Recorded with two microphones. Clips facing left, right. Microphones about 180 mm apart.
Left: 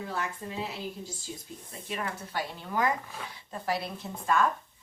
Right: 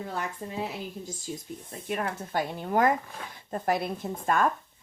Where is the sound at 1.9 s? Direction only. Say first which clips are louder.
Right 5 dB; 50° right (ahead or behind).